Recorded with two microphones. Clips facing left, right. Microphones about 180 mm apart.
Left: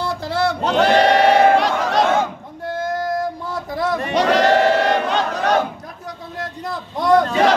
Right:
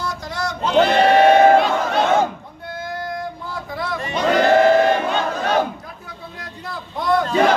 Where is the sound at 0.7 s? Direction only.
75° left (ahead or behind).